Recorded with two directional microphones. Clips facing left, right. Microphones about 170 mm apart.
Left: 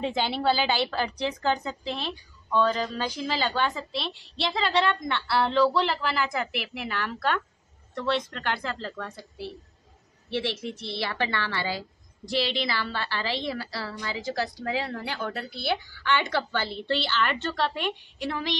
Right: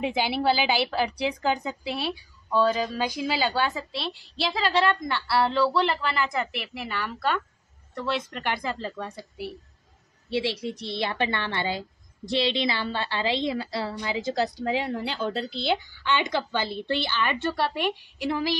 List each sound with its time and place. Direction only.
0.0 s a woman's voice: 10° right (ahead or behind)